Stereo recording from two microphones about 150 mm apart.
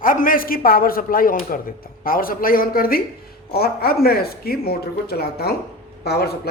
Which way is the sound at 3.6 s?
90° left.